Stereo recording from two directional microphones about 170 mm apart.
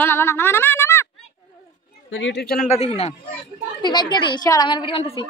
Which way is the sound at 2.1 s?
90° left.